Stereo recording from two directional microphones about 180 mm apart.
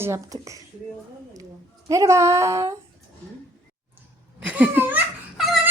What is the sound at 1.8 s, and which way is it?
Speech, 20° right (ahead or behind).